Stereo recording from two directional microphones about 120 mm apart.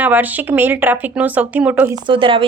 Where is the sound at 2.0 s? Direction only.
45° right (ahead or behind).